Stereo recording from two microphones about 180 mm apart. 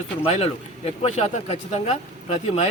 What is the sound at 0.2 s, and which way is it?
Speech, 35° left (ahead or behind).